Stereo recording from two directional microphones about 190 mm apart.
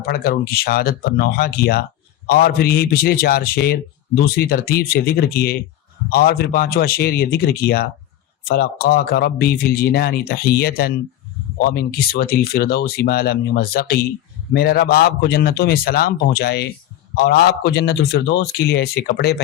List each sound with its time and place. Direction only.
0.0 s a man's voice: 55° left (ahead or behind)